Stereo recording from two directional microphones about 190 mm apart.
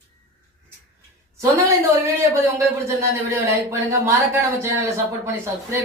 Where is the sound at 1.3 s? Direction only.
15° right (ahead or behind).